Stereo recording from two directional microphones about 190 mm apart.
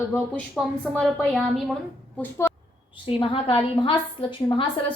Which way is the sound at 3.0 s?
30° left (ahead or behind).